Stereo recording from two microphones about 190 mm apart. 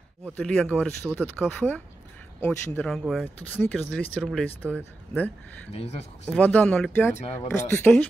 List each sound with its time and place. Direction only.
0.3 s speech: 5° left (ahead or behind)
2.9 s speech: centre (ahead or behind)
5.7 s speech: 35° left (ahead or behind)
6.3 s speech: 10° left (ahead or behind)